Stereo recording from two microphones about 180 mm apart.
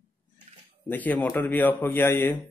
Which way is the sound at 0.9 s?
10° left (ahead or behind).